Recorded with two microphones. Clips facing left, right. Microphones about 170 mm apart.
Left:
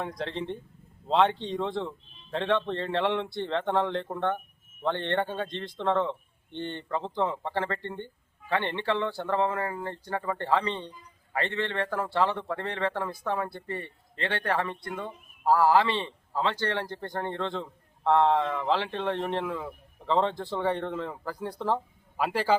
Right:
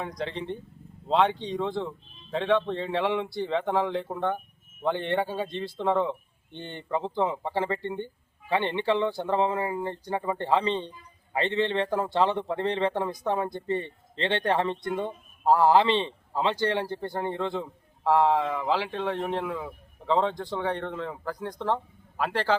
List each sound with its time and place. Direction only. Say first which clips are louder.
0.0 s a man's voice: even; centre (ahead or behind)